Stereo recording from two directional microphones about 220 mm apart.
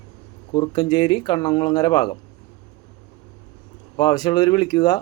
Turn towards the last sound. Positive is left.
turn(degrees=20)  # may be behind; listen again after turning